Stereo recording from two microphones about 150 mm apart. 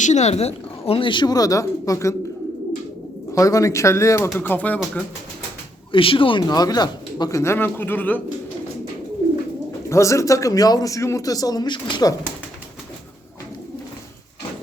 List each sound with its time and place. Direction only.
0.0 s speech: 50° left (ahead or behind); by 2.1 s 20° left (ahead or behind)
3.3 s speech: 20° left (ahead or behind)
5.9 s speech: 35° left (ahead or behind); by 8.2 s 10° left (ahead or behind)
9.9 s speech: 20° left (ahead or behind)